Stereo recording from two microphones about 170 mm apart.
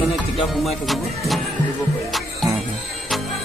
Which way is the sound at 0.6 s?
Centre (ahead or behind).